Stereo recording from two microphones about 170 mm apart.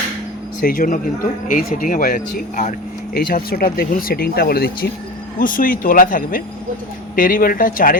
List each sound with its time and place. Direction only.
0.6 s speech: 55° left (ahead or behind)
5.4 s speech: 55° left (ahead or behind)